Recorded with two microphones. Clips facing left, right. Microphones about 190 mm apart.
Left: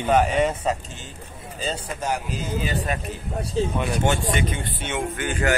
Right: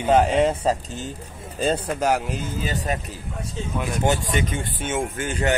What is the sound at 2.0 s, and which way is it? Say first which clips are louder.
Speech: right 3 dB; 90° right.